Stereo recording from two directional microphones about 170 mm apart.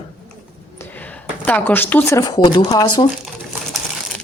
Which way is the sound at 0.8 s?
10° left (ahead or behind).